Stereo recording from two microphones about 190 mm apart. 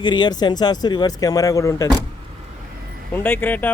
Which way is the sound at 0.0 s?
25° left (ahead or behind).